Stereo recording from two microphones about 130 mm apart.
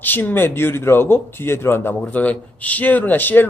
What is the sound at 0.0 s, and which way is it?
Speech, 15° left (ahead or behind).